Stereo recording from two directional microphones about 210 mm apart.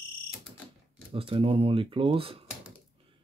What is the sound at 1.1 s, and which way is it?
Speech, 25° right (ahead or behind).